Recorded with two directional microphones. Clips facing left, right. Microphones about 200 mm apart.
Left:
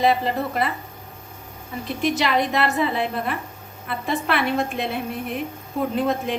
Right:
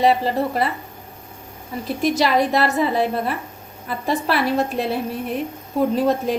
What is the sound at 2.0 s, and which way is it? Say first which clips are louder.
A woman's voice: right 3 dB; 40° right (ahead or behind).